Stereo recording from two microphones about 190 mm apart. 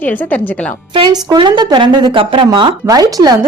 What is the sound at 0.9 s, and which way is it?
A woman's voice, 25° right (ahead or behind).